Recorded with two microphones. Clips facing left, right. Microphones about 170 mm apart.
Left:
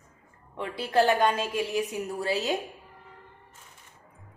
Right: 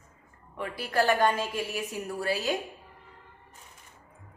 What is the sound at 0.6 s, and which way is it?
A woman's voice, 25° left (ahead or behind).